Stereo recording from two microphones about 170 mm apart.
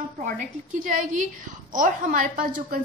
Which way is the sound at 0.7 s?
50° right (ahead or behind).